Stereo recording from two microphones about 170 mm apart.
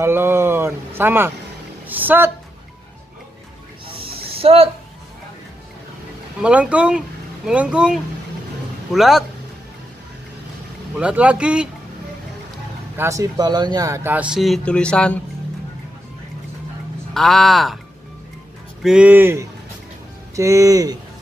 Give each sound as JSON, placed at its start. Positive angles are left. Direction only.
{"t": 0.0, "sound": "speech", "side_deg": -15}
{"t": 4.0, "sound": "a sound", "side_deg": -35}
{"t": 6.4, "sound": "speech", "side_deg": -5}
{"t": 11.0, "sound": "speech", "side_deg": -5}
{"t": 12.9, "sound": "speech", "side_deg": -15}
{"t": 17.1, "sound": "speech", "side_deg": 0}
{"t": 18.8, "sound": "speech", "side_deg": -5}